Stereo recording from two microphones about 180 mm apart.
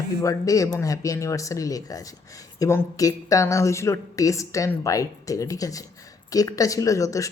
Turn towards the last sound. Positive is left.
turn(degrees=20)  # may be behind; listen again after turning